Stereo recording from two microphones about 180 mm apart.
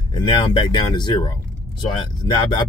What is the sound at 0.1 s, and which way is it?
Speech, 25° left (ahead or behind).